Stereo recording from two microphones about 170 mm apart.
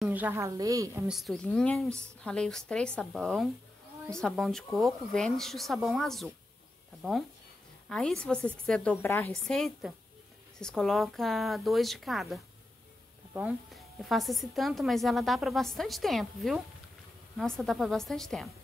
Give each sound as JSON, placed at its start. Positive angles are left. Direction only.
{"t": 0.0, "sound": "a woman's voice", "side_deg": -10}
{"t": 1.0, "sound": "a woman's voice", "side_deg": 0}
{"t": 9.4, "sound": "a woman's voice", "side_deg": 0}